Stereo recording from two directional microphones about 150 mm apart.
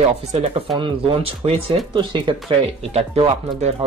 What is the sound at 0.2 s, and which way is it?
Speech, 45° right (ahead or behind).